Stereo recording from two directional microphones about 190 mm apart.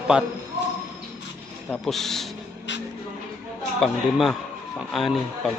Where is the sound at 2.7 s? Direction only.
70° left (ahead or behind).